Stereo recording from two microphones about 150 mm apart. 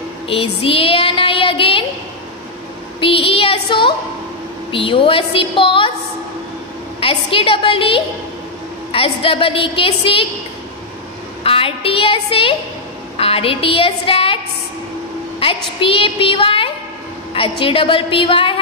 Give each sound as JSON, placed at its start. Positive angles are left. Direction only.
{"t": 0.3, "sound": "child singing", "side_deg": 40}
{"t": 3.0, "sound": "a woman's voice", "side_deg": 35}
{"t": 7.0, "sound": "a woman's voice", "side_deg": 40}
{"t": 11.4, "sound": "a woman's voice", "side_deg": 40}
{"t": 15.4, "sound": "a woman's voice", "side_deg": 35}